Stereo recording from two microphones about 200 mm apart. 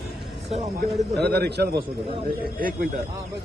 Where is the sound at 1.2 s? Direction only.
55° right (ahead or behind).